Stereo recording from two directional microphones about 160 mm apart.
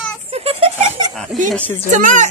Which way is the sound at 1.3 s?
Centre (ahead or behind).